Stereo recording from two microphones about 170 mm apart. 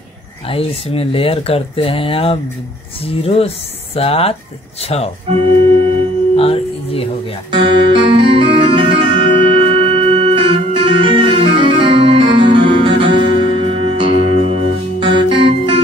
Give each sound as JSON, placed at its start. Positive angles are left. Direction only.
{"t": 0.5, "sound": "speech", "side_deg": 35}
{"t": 6.3, "sound": "speech", "side_deg": 35}
{"t": 7.5, "sound": "music", "side_deg": -30}